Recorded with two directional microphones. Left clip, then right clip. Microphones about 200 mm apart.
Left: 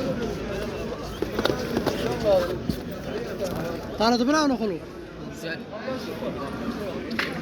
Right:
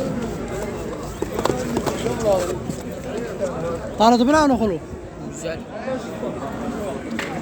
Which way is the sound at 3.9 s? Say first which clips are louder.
Right 7 dB; 50° right (ahead or behind).